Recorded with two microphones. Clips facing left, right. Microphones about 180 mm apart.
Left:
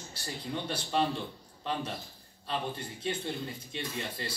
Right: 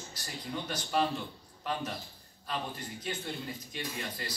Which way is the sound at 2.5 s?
30° left (ahead or behind).